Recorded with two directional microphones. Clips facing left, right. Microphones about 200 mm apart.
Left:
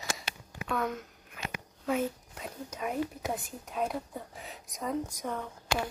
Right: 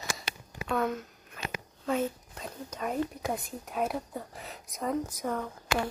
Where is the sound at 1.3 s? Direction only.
10° left (ahead or behind).